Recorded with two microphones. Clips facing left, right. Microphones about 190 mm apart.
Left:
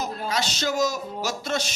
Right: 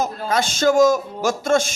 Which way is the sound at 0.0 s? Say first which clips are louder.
Right 6 dB; 50° right (ahead or behind).